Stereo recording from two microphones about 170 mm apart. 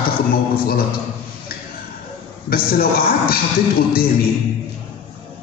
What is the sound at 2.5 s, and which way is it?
Speech, 60° left (ahead or behind).